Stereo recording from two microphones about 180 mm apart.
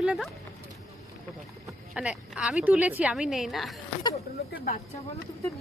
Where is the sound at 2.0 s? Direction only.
5° right (ahead or behind).